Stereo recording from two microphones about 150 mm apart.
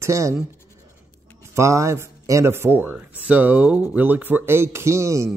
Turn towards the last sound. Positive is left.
turn(degrees=-20)  # may be behind; listen again after turning